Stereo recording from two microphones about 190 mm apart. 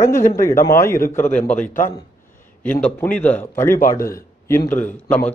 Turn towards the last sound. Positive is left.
turn(degrees=5)  # may be behind; listen again after turning